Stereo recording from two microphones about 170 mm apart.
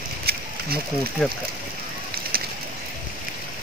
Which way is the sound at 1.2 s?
5° left (ahead or behind).